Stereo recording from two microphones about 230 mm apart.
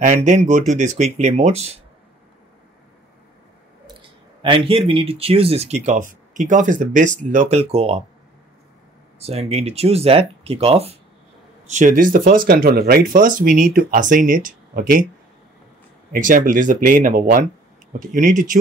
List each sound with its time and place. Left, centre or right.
0.0 s speech: right
4.4 s speech: right
9.2 s speech: right
16.1 s speech: right